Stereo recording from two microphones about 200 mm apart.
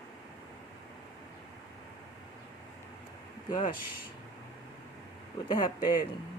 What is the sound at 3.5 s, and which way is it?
Speech, 40° left (ahead or behind).